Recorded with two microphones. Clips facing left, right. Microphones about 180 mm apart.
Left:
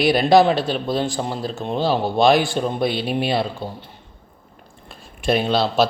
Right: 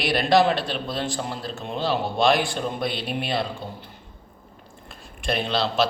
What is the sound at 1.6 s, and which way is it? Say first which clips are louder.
Speech: left 5 dB; 35° left (ahead or behind).